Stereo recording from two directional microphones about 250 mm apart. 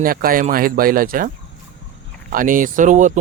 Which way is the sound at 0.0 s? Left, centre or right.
Right.